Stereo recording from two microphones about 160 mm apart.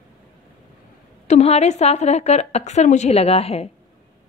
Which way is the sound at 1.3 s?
40° left (ahead or behind).